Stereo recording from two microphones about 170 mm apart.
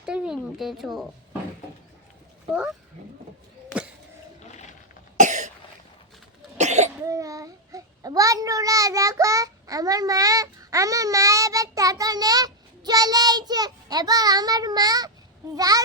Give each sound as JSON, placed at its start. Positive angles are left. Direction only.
{"t": 0.0, "sound": "speech", "side_deg": -5}
{"t": 5.2, "sound": "cough", "side_deg": -45}
{"t": 6.6, "sound": "cough", "side_deg": -45}
{"t": 7.0, "sound": "a child's voice", "side_deg": -20}